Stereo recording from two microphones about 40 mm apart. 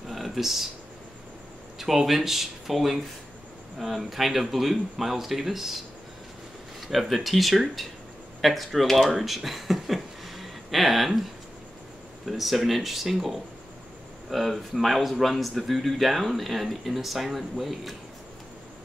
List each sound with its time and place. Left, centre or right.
0.1 s a sound: centre
1.8 s a man's voice: centre
6.9 s a man's voice: centre
12.3 s a man's voice: centre